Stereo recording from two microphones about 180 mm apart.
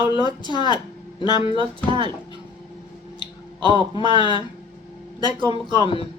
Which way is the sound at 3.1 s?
25° left (ahead or behind).